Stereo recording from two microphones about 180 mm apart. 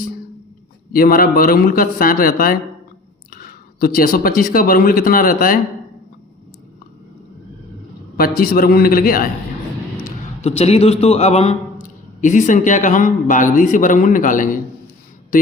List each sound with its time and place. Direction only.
0.9 s speech: 55° left (ahead or behind)
8.1 s speech: 55° left (ahead or behind)
10.0 s a man's voice: 35° left (ahead or behind)